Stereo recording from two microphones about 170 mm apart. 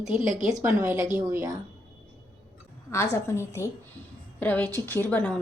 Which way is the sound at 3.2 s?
15° left (ahead or behind).